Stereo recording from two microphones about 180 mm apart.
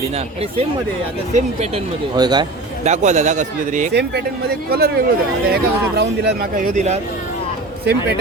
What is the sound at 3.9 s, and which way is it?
Speech, 65° right (ahead or behind).